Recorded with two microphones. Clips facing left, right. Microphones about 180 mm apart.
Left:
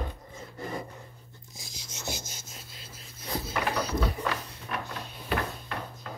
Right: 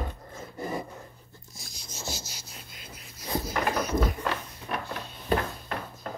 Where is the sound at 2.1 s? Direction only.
50° left (ahead or behind).